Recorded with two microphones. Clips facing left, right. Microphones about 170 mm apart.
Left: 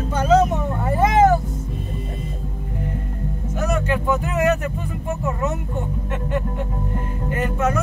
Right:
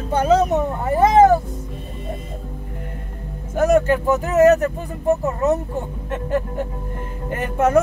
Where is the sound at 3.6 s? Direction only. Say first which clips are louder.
Right 7 dB; 50° right (ahead or behind).